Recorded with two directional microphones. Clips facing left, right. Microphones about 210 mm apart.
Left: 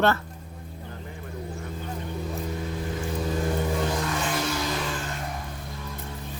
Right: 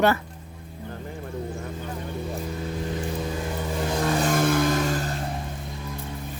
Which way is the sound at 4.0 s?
35° right (ahead or behind).